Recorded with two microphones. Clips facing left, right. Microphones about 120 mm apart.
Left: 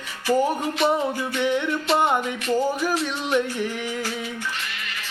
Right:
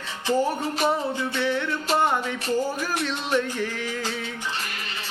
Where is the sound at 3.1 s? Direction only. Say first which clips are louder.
Left 2 dB; 15° left (ahead or behind).